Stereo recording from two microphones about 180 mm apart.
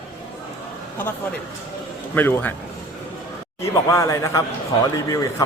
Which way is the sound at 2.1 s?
10° left (ahead or behind).